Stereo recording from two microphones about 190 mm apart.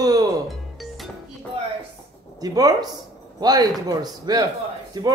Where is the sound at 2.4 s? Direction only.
20° right (ahead or behind).